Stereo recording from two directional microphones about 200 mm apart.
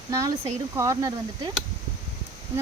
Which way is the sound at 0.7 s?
15° right (ahead or behind).